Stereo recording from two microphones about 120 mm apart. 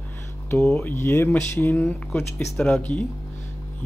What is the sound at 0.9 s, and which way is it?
Speech, 20° left (ahead or behind).